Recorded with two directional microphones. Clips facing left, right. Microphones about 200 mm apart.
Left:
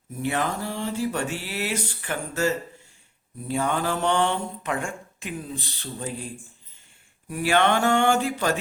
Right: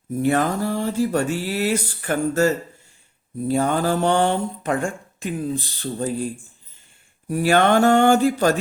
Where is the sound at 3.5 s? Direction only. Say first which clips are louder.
Right 5 dB; 40° right (ahead or behind).